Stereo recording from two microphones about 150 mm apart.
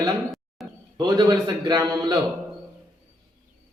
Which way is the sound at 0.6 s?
Centre (ahead or behind).